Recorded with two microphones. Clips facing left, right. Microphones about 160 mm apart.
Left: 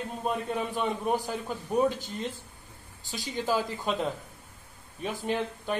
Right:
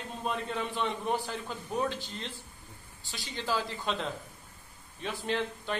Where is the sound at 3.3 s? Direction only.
10° left (ahead or behind).